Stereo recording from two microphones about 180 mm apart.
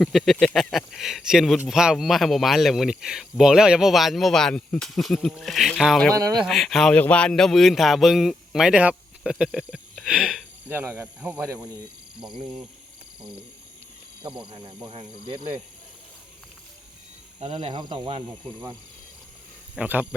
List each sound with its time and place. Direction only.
0.0 s a man's voice: centre (ahead or behind)
6.1 s speech: 20° right (ahead or behind)
6.4 s a man's voice: centre (ahead or behind)
12.2 s speech: 25° right (ahead or behind)
14.8 s speech: 30° right (ahead or behind)
17.4 s speech: 30° right (ahead or behind)
19.7 s a man's voice: 10° right (ahead or behind)